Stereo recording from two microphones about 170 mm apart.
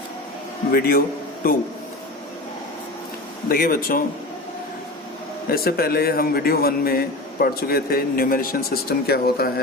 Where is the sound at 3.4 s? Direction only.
60° left (ahead or behind).